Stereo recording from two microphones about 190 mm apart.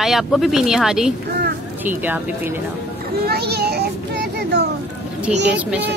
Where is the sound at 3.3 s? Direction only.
55° right (ahead or behind).